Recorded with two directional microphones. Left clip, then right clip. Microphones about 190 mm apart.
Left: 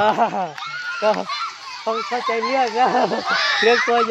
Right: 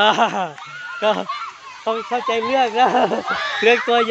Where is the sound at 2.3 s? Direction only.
15° right (ahead or behind).